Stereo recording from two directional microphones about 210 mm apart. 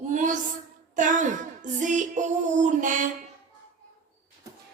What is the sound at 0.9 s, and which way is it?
Female singing, 35° right (ahead or behind).